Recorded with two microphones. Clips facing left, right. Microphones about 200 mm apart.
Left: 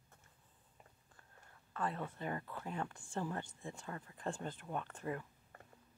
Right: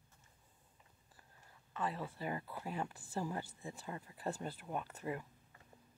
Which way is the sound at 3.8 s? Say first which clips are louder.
Right 1 dB; 15° right (ahead or behind).